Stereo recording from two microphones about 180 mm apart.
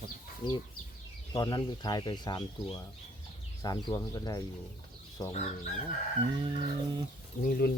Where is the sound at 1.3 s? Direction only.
25° left (ahead or behind).